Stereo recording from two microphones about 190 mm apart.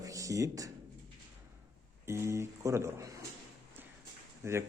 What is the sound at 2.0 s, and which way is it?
A man's voice, 15° right (ahead or behind).